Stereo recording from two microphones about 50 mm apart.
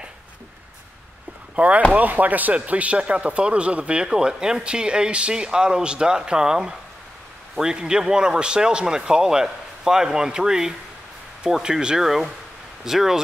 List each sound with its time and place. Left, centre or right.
1.5 s speech: right; by 13.2 s centre